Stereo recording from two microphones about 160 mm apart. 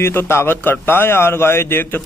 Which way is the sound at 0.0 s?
15° left (ahead or behind).